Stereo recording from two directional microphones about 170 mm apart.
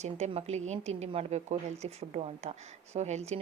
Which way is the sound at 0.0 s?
40° right (ahead or behind).